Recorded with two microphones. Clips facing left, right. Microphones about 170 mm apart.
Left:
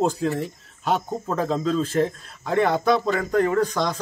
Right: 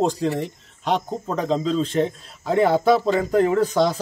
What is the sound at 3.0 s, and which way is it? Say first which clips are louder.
Speech: right 3 dB; 25° right (ahead or behind).